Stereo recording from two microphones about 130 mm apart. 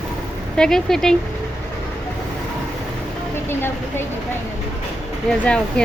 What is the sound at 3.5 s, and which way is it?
Speech, 15° left (ahead or behind).